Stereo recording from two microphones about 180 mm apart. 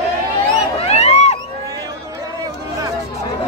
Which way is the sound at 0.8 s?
35° left (ahead or behind).